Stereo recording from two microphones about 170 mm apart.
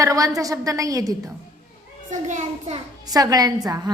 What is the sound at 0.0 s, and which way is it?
A woman's voice, 20° right (ahead or behind).